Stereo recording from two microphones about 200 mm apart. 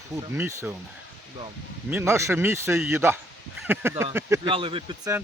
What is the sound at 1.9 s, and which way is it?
Speech, 10° right (ahead or behind).